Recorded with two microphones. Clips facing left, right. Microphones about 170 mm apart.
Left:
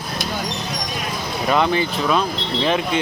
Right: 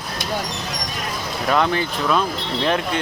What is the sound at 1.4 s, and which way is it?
Speech, 5° left (ahead or behind).